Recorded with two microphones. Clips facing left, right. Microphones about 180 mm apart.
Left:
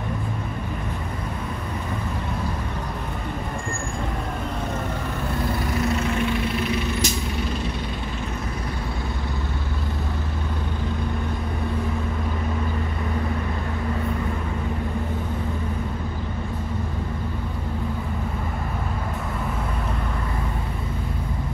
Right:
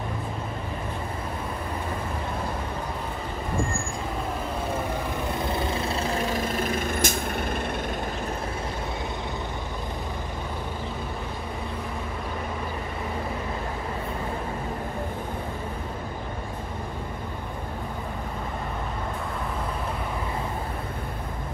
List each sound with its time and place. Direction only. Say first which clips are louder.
5.5 s vehicle: left 3 dB; 30° right (ahead or behind); by 7.7 s 55° right (ahead or behind)